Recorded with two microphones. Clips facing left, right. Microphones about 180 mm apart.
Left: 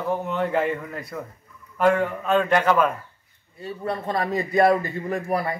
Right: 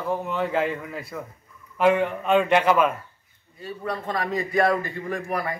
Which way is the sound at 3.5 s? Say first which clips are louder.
Left 2 dB; 25° left (ahead or behind).